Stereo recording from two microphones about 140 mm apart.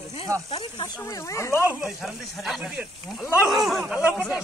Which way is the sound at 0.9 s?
20° left (ahead or behind).